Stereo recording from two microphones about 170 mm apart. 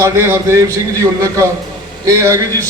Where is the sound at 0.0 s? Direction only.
15° right (ahead or behind).